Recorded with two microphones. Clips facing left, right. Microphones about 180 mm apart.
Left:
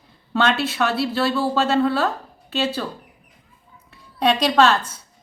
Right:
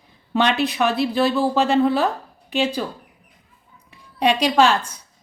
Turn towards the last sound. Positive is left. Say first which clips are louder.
# even
turn(degrees=-15)  # may be behind; listen again after turning